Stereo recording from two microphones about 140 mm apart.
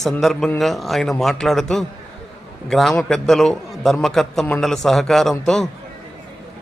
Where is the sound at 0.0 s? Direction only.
Centre (ahead or behind).